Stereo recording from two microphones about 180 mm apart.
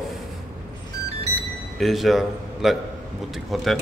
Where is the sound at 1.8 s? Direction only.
Centre (ahead or behind).